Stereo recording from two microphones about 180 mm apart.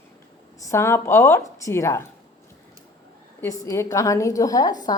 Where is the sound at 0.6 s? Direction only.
15° left (ahead or behind).